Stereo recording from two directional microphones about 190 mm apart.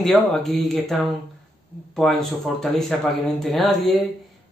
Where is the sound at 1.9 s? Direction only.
Centre (ahead or behind).